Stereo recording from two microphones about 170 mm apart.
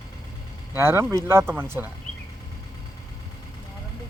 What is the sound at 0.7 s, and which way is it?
Speech, 15° right (ahead or behind).